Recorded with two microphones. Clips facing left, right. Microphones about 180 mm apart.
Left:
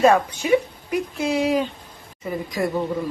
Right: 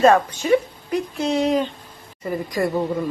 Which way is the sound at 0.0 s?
10° left (ahead or behind).